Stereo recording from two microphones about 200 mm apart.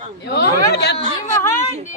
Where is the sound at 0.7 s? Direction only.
55° left (ahead or behind).